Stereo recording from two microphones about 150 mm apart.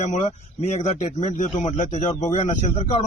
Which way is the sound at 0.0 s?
55° left (ahead or behind).